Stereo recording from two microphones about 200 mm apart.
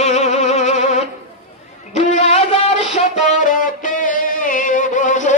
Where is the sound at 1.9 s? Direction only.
35° left (ahead or behind).